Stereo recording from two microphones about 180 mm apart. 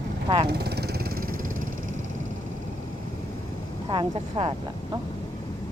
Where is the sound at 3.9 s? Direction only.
30° right (ahead or behind).